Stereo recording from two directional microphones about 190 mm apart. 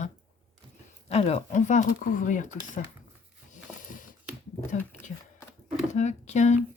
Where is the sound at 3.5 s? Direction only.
45° left (ahead or behind).